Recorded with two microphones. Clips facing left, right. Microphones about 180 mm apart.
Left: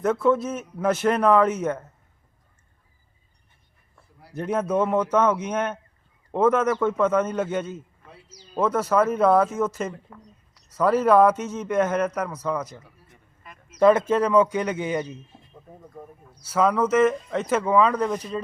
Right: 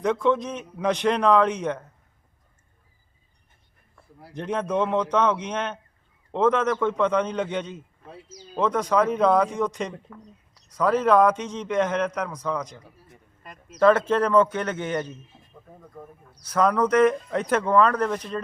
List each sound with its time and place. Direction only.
0.0 s a man's voice: 5° left (ahead or behind)
4.4 s a man's voice: 5° left (ahead or behind)